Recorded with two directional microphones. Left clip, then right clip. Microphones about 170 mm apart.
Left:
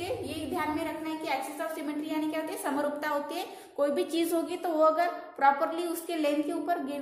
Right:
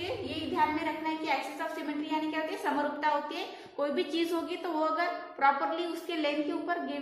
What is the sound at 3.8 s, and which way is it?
A woman's voice, 75° left (ahead or behind).